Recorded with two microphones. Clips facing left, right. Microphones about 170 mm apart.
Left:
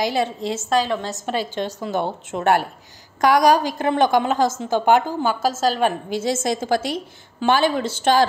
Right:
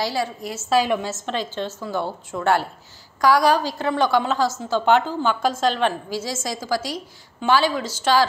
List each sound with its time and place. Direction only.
0.0 s a woman's voice: 20° left (ahead or behind)
0.7 s a woman's voice: 10° right (ahead or behind)
1.2 s a woman's voice: 10° left (ahead or behind)
3.2 s a woman's voice: 20° left (ahead or behind); by 5.8 s 5° left (ahead or behind)
6.0 s a woman's voice: 55° left (ahead or behind)